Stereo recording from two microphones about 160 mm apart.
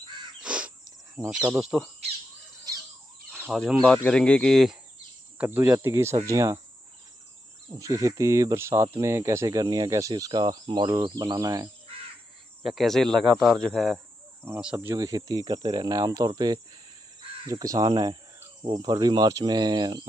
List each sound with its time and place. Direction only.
0.4 s bird: 5° right (ahead or behind)
1.2 s speech: 15° right (ahead or behind)
1.6 s speech: 5° right (ahead or behind)
3.5 s speech: centre (ahead or behind)
5.4 s speech: 15° right (ahead or behind)
7.7 s speech: 20° right (ahead or behind)
12.6 s speech: centre (ahead or behind)
14.4 s speech: 10° right (ahead or behind)
17.5 s speech: 20° right (ahead or behind)